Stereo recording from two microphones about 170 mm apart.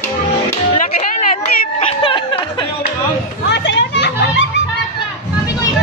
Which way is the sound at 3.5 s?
90° left.